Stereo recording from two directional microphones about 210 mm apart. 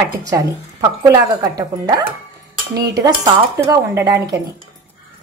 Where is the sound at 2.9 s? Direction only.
15° right (ahead or behind).